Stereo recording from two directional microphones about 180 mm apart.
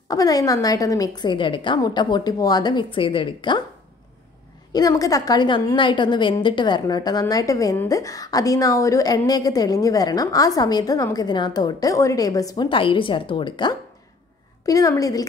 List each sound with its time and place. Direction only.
0.1 s a woman's voice: 20° left (ahead or behind)
4.7 s a woman's voice: 20° left (ahead or behind)